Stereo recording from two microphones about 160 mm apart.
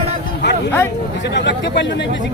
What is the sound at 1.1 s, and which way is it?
Speech, 90° left.